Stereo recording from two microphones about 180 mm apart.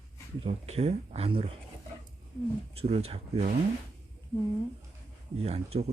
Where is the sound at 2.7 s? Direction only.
35° right (ahead or behind).